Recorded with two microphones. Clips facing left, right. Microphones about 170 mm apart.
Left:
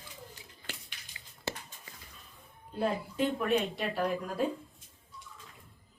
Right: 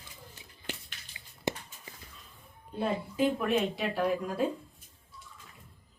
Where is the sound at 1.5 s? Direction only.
15° right (ahead or behind).